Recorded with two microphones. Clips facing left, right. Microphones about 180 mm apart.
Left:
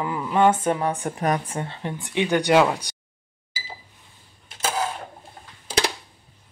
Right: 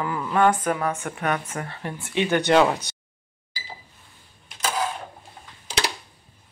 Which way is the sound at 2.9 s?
15° left (ahead or behind).